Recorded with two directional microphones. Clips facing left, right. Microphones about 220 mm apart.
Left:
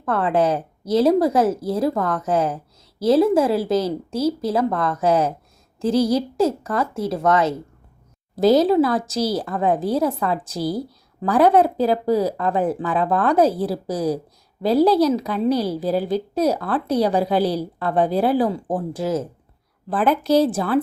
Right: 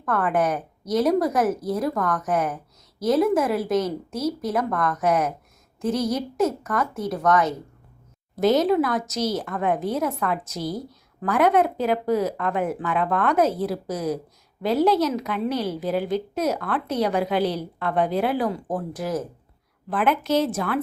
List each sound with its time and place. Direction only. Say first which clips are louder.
0.0 s a woman's voice: left 3 dB; 25° left (ahead or behind)